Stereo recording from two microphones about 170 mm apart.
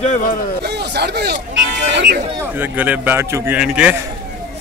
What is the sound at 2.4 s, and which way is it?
A man's voice, 10° right (ahead or behind).